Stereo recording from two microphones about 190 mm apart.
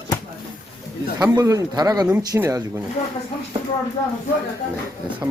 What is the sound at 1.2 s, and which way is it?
Speech, 20° right (ahead or behind).